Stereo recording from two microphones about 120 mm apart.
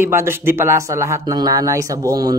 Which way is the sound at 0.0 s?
20° right (ahead or behind).